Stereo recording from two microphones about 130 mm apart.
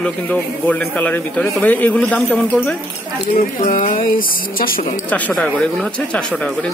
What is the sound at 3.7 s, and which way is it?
Speech, 90° left.